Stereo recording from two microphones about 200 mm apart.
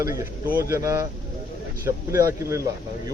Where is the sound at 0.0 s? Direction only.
15° right (ahead or behind).